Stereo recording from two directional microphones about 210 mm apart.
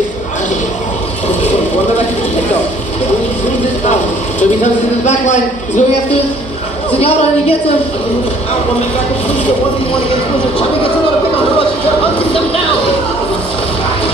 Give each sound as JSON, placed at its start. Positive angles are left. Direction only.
{"t": 5.0, "sound": "a man's voice", "side_deg": 35}